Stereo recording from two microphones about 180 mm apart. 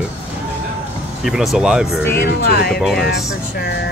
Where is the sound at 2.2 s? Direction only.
60° left (ahead or behind).